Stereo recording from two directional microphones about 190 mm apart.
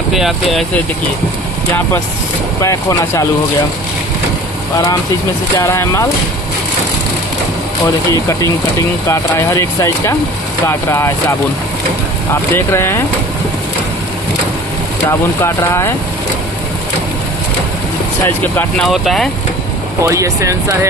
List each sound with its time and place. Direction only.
0.1 s speech: centre (ahead or behind)
2.6 s speech: 15° left (ahead or behind)
5.6 s speech: 15° left (ahead or behind)
8.1 s speech: 15° left (ahead or behind)
12.5 s speech: 15° left (ahead or behind)
15.0 s speech: 15° left (ahead or behind)
18.2 s speech: 10° left (ahead or behind)
20.0 s speech: 15° right (ahead or behind)